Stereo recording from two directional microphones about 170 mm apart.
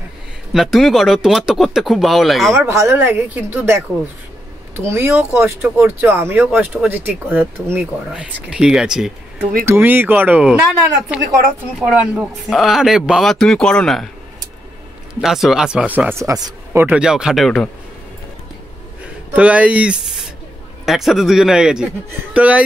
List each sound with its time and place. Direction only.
0.5 s speech: centre (ahead or behind)
2.7 s speech: 15° right (ahead or behind)
4.7 s speech: 15° right (ahead or behind); by 14.1 s centre (ahead or behind)
15.1 s speech: centre (ahead or behind)
16.2 s speech: 20° right (ahead or behind)
16.8 s speech: 5° right (ahead or behind)
19.3 s speech: 10° right (ahead or behind)